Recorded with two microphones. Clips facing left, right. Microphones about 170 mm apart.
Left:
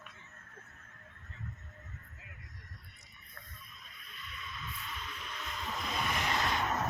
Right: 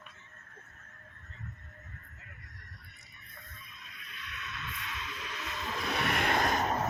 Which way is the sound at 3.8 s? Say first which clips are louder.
Right 4 dB; 80° right.